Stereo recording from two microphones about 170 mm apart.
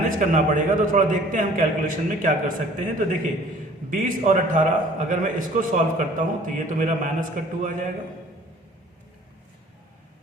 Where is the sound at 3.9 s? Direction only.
50° right (ahead or behind).